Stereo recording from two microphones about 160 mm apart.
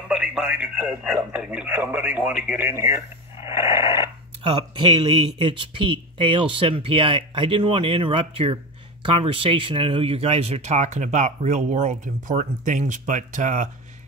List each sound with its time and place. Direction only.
0.1 s a man's voice: 5° right (ahead or behind)
4.4 s speech: 30° right (ahead or behind); by 13.7 s 50° right (ahead or behind)